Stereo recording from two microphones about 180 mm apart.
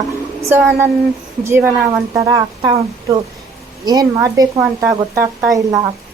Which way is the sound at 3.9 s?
20° right (ahead or behind).